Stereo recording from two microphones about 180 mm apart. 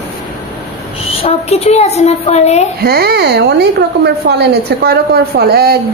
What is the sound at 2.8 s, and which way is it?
A woman's voice, 60° right (ahead or behind).